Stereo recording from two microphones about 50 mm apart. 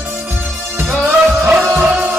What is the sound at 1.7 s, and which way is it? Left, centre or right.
Music, right.